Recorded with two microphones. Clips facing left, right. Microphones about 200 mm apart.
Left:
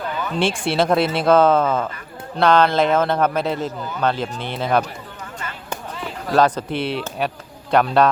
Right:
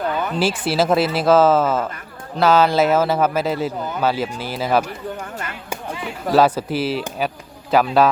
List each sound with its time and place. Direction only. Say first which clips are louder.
0.3 s a man's voice: left 1 dB; 5° right (ahead or behind)
5.7 s chop: right 2 dB; 10° right (ahead or behind)
7.2 s a man's voice: even; centre (ahead or behind)